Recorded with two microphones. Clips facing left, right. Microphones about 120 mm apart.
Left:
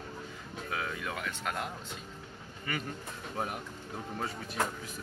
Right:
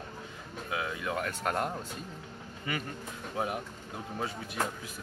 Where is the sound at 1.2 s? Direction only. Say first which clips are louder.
Right 6 dB; 45° right (ahead or behind).